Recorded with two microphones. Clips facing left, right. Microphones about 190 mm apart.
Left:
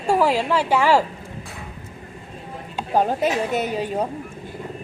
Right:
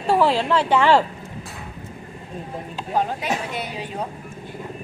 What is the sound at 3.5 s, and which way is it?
Speech, 45° left (ahead or behind).